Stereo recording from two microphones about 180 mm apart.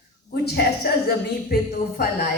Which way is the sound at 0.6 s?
65° left (ahead or behind).